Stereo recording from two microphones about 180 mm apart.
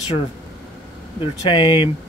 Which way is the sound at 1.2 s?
25° left (ahead or behind).